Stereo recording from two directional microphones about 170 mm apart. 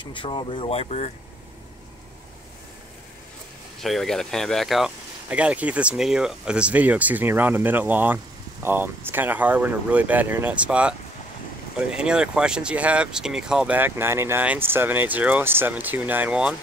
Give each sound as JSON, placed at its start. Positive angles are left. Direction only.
{"t": 0.0, "sound": "speech", "side_deg": 30}
{"t": 3.8, "sound": "speech", "side_deg": 0}